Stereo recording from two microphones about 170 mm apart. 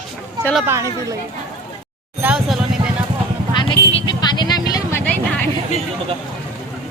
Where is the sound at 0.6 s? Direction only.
15° right (ahead or behind).